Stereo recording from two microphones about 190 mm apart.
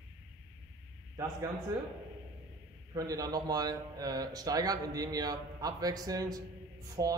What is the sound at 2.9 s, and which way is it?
A man's voice, 20° right (ahead or behind).